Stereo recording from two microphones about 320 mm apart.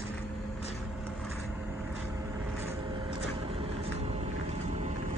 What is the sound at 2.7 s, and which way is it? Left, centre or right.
Vehicle, centre.